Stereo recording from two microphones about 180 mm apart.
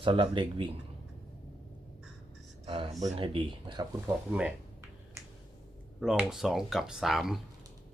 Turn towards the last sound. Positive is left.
turn(degrees=0)  # may be behind; listen again after turning